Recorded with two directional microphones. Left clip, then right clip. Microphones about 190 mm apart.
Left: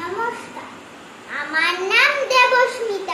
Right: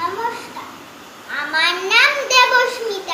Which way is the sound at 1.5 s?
15° left (ahead or behind).